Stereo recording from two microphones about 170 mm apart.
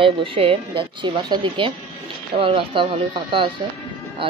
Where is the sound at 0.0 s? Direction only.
30° right (ahead or behind).